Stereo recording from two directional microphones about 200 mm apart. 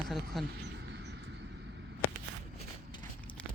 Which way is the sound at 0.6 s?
60° right (ahead or behind).